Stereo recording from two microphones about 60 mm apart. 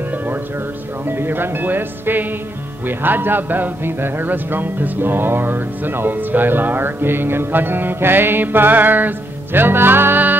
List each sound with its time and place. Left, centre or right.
1.0 s music: right